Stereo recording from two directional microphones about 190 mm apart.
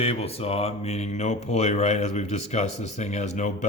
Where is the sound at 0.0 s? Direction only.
35° left (ahead or behind).